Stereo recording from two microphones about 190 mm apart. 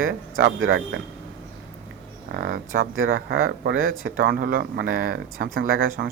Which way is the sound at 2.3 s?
55° right (ahead or behind).